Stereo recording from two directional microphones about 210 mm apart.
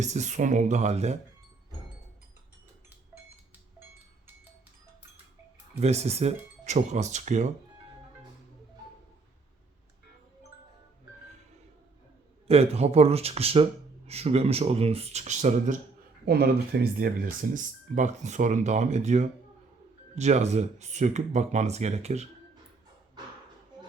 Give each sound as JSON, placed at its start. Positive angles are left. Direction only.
{"t": 0.0, "sound": "speech", "side_deg": -35}
{"t": 5.8, "sound": "speech", "side_deg": -30}
{"t": 12.5, "sound": "speech", "side_deg": -30}
{"t": 16.2, "sound": "speech", "side_deg": -50}